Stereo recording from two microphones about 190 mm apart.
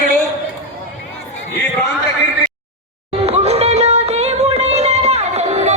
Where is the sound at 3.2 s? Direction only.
35° right (ahead or behind).